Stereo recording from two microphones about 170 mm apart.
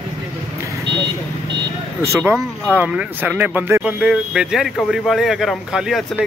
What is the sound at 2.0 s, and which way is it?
Speech, 15° right (ahead or behind).